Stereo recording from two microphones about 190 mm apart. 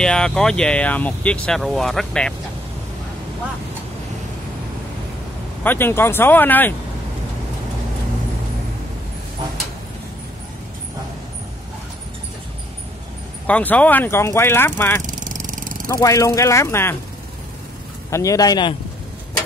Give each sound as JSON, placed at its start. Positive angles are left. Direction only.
{"t": 0.0, "sound": "speech", "side_deg": 5}
{"t": 5.6, "sound": "speech", "side_deg": 10}
{"t": 13.5, "sound": "speech", "side_deg": 5}
{"t": 15.0, "sound": "vehicle", "side_deg": -45}
{"t": 15.9, "sound": "speech", "side_deg": 15}
{"t": 18.1, "sound": "a man's voice", "side_deg": 15}